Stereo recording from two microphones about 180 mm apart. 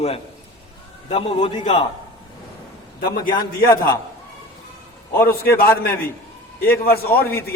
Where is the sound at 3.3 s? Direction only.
20° left (ahead or behind).